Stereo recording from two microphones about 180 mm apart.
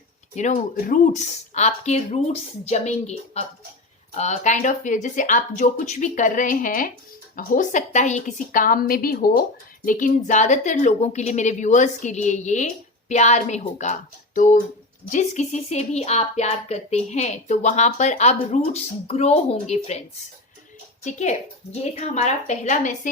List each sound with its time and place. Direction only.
0.3 s speech: 40° left (ahead or behind)
21.0 s speech: 40° left (ahead or behind)